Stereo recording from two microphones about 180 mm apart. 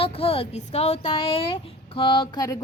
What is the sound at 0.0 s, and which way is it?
A woman's voice, 30° left (ahead or behind).